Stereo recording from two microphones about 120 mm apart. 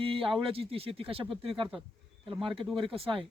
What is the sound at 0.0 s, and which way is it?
Speech, 50° right (ahead or behind).